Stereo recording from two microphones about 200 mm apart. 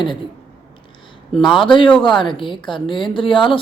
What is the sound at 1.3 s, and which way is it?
Speech, centre (ahead or behind).